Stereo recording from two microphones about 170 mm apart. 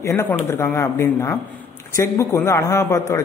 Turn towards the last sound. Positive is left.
turn(degrees=20)  # may be behind; listen again after turning